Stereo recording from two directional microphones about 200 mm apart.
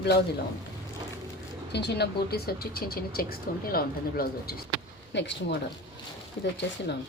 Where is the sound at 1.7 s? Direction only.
55° left (ahead or behind).